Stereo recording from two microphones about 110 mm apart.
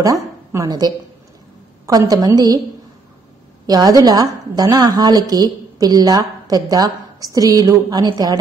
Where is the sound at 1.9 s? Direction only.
35° right (ahead or behind).